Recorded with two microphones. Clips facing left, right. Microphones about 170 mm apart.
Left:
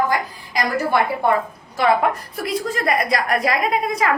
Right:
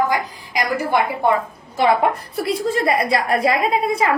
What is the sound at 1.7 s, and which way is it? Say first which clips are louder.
A woman's voice: right 1 dB; 30° right (ahead or behind).